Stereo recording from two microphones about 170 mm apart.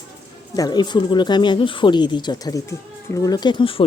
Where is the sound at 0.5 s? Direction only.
25° left (ahead or behind).